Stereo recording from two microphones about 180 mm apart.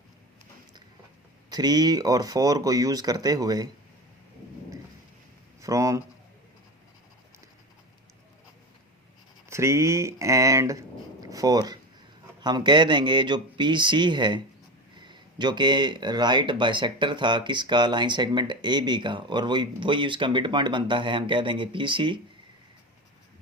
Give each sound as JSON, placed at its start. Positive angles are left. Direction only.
{"t": 1.5, "sound": "speech", "side_deg": -20}
{"t": 5.6, "sound": "speech", "side_deg": -20}
{"t": 9.5, "sound": "speech", "side_deg": -15}